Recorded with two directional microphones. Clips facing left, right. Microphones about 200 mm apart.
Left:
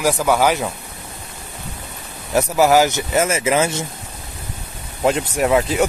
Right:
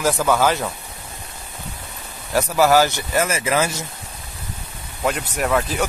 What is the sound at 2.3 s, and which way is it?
Speech, 15° left (ahead or behind).